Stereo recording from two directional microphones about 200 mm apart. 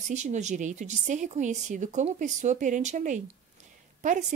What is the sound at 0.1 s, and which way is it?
Speech, 35° right (ahead or behind).